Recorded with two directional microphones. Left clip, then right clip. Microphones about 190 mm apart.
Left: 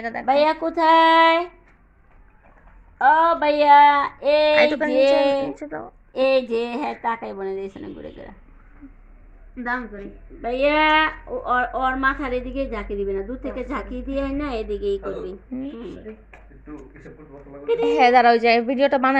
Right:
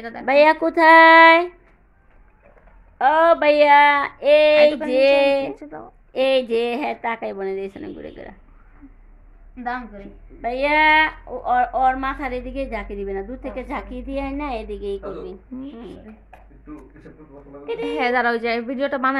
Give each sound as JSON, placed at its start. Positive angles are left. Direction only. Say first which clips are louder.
{"t": 0.2, "sound": "speech", "louder": "right 4 dB", "side_deg": -40}
{"t": 3.0, "sound": "speech", "louder": "right 1 dB", "side_deg": -30}
{"t": 5.5, "sound": "a woman's voice", "louder": "left 3 dB", "side_deg": 15}
{"t": 6.1, "sound": "speech", "louder": "right 1 dB", "side_deg": -20}
{"t": 10.4, "sound": "speech", "louder": "right 1 dB", "side_deg": -40}
{"t": 17.7, "sound": "a woman's voice", "louder": "left 6 dB", "side_deg": 10}